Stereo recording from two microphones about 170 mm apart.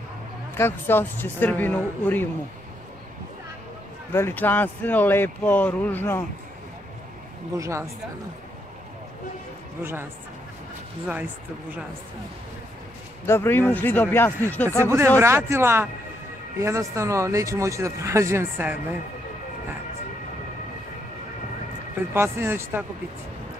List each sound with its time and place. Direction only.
0.6 s speech: 15° left (ahead or behind)
4.1 s speech: 15° left (ahead or behind)
7.5 s speech: 20° right (ahead or behind)
13.3 s speech: 15° left (ahead or behind)
14.8 s speech: 15° right (ahead or behind)
22.1 s speech: 15° right (ahead or behind)